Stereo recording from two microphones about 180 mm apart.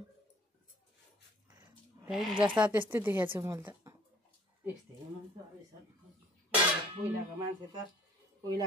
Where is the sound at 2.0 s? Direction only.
Centre (ahead or behind).